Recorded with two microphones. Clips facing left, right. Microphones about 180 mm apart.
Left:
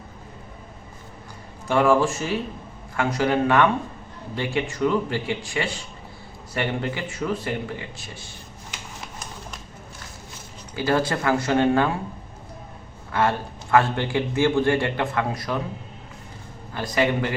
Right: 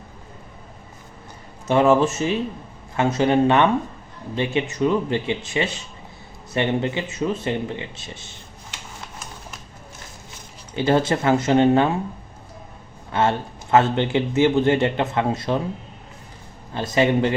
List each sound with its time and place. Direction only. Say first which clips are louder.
1.6 s a man's voice: right 2 dB; 20° right (ahead or behind)
10.8 s a man's voice: right 3 dB; 25° right (ahead or behind)
13.1 s a man's voice: right 2 dB; 25° right (ahead or behind)
16.7 s a man's voice: right 4 dB; 25° right (ahead or behind)